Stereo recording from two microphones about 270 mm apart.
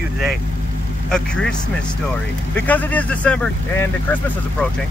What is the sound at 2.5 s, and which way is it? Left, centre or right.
Speech, centre.